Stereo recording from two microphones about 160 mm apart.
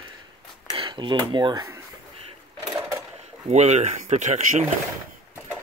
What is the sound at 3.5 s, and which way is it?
Speech, 45° right (ahead or behind).